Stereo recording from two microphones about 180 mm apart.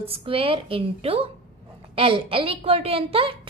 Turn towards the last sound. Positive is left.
turn(degrees=-30)  # may be behind; listen again after turning